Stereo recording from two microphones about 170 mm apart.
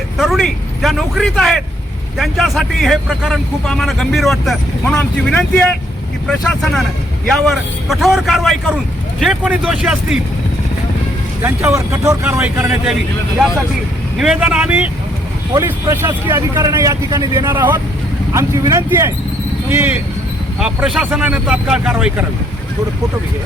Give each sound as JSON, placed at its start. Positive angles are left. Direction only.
{"t": 0.2, "sound": "a man's voice", "side_deg": 0}
{"t": 11.4, "sound": "speech", "side_deg": -15}
{"t": 14.2, "sound": "speech", "side_deg": -5}
{"t": 20.6, "sound": "speech", "side_deg": -5}